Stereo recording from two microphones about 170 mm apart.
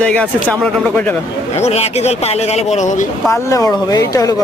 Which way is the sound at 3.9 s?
20° left (ahead or behind).